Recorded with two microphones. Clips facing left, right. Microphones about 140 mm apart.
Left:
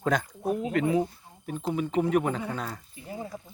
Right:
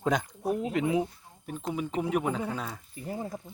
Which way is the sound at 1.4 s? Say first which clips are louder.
Left 3 dB; centre (ahead or behind).